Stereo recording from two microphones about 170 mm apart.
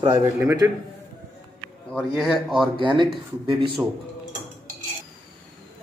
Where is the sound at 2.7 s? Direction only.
30° right (ahead or behind).